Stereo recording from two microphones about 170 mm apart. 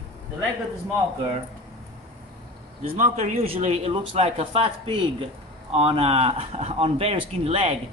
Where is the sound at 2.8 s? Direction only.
50° right (ahead or behind).